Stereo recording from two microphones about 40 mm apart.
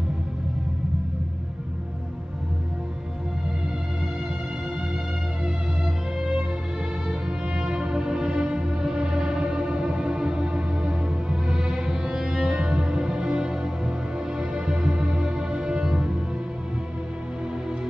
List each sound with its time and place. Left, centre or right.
7.5 s music: centre